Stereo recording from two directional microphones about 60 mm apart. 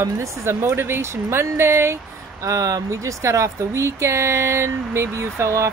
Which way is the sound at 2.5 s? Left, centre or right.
Right.